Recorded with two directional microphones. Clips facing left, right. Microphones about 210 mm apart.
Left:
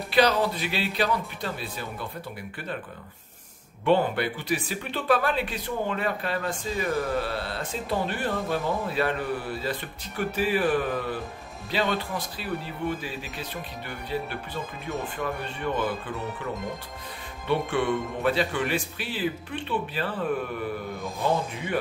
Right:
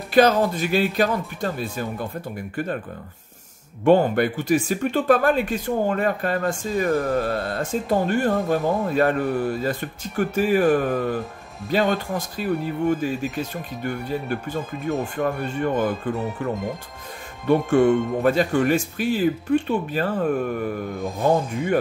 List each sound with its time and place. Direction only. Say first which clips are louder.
0.1 s speech: right 6 dB; 45° right (ahead or behind)
3.8 s speech: right 6 dB; 45° right (ahead or behind)